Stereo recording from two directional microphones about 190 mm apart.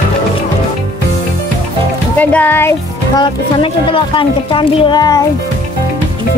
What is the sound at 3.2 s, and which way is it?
Speech, 25° left (ahead or behind).